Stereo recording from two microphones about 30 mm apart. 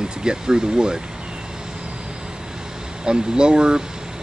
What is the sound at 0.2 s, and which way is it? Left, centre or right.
Speech, right.